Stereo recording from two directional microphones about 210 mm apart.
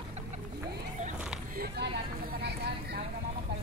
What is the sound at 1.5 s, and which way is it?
Vehicle, 45° right (ahead or behind).